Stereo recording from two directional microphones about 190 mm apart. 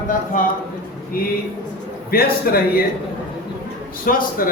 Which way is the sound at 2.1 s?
50° left (ahead or behind).